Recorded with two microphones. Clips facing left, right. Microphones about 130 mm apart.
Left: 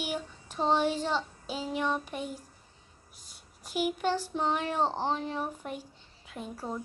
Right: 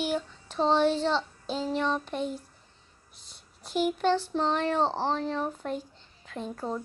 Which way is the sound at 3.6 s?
10° left (ahead or behind).